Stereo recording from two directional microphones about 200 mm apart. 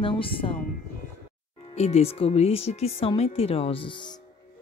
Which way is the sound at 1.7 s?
35° left (ahead or behind).